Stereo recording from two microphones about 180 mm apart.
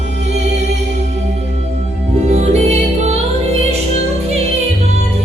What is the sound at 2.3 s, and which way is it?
Music, 40° right (ahead or behind).